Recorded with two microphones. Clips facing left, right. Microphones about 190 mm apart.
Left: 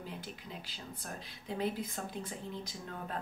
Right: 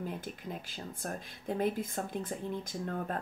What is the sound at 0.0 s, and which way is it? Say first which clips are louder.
Speech: right 6 dB; 50° right (ahead or behind).